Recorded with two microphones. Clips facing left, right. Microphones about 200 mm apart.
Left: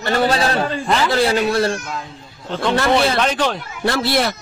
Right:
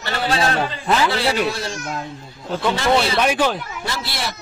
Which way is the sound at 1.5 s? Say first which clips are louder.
Left 7 dB; 60° left (ahead or behind).